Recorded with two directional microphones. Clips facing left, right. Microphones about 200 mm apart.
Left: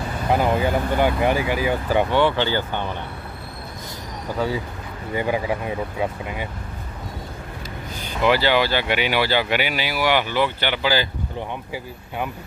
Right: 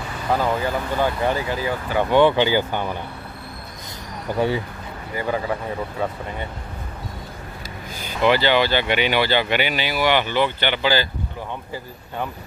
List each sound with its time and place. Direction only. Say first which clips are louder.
0.3 s speech: left 2 dB; 20° left (ahead or behind)
2.0 s speech: right 4 dB; 15° right (ahead or behind)
5.1 s speech: left 2 dB; 15° left (ahead or behind)
8.2 s speech: right 1 dB; 5° left (ahead or behind)